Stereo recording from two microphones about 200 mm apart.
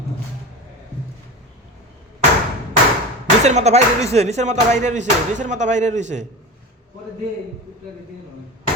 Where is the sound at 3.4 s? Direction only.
35° right (ahead or behind).